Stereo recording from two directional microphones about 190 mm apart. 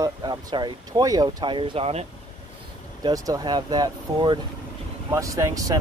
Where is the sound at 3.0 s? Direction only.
20° right (ahead or behind).